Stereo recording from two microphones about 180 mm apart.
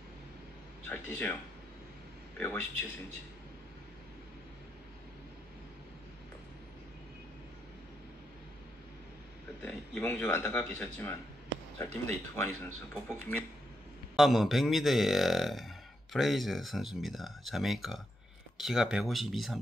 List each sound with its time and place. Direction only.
0.8 s a man's voice: 10° left (ahead or behind)
9.6 s speech: 10° left (ahead or behind)
14.1 s a man's voice: centre (ahead or behind)